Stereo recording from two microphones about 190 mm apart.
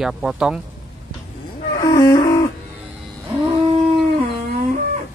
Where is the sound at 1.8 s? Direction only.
20° left (ahead or behind).